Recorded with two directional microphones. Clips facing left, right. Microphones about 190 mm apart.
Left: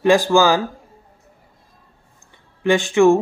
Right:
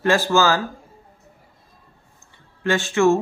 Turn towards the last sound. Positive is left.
turn(degrees=15)  # may be behind; listen again after turning